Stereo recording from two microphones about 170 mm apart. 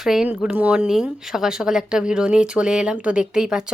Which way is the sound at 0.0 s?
5° right (ahead or behind).